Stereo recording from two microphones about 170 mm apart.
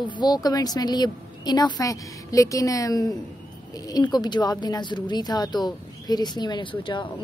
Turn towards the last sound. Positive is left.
turn(degrees=30)  # may be behind; listen again after turning